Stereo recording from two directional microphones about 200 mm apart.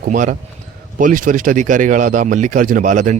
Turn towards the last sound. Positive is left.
turn(degrees=-40)  # may be behind; listen again after turning